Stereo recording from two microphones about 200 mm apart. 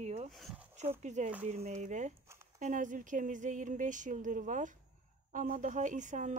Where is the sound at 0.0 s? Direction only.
35° right (ahead or behind).